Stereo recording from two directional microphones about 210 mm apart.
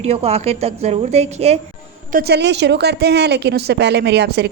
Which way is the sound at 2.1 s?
50° right (ahead or behind).